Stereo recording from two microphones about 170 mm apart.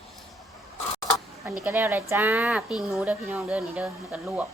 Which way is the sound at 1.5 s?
10° right (ahead or behind).